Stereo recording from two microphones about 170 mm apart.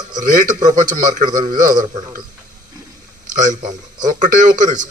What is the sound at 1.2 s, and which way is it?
Speech, 25° right (ahead or behind).